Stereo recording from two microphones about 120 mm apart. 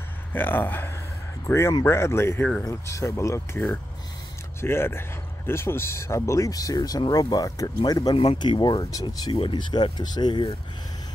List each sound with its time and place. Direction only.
0.3 s speech: 15° left (ahead or behind); by 10.5 s 40° left (ahead or behind)